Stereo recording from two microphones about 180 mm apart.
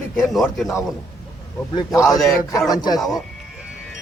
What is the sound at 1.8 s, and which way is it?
A man's voice, 20° left (ahead or behind).